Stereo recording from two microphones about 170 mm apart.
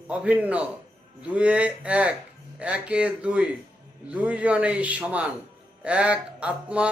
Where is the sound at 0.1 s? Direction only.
10° right (ahead or behind).